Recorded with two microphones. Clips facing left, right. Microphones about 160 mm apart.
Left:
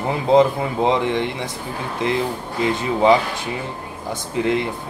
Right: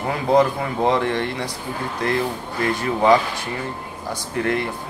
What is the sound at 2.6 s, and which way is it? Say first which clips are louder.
Speech: left 2 dB; 20° left (ahead or behind).